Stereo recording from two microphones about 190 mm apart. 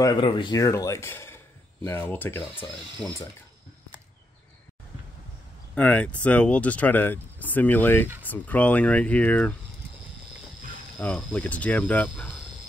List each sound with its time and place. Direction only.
0.0 s speech: 25° left (ahead or behind); by 3.2 s 5° left (ahead or behind)
5.8 s speech: 5° left (ahead or behind)
11.0 s speech: 5° left (ahead or behind)